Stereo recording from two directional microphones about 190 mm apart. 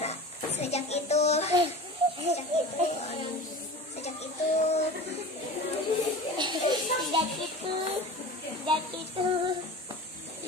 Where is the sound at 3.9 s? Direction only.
35° left (ahead or behind).